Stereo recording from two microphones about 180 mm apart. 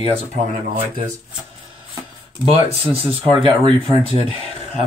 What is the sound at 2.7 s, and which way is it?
Speech, 30° right (ahead or behind).